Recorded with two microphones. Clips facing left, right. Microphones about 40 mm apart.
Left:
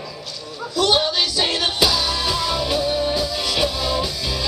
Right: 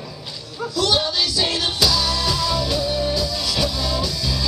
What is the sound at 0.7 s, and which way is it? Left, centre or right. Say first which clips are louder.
Music: left 2 dB; left.